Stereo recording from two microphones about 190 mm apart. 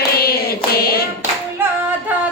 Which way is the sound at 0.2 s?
55° left (ahead or behind).